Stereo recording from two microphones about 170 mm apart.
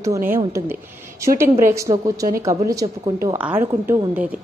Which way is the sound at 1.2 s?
15° right (ahead or behind).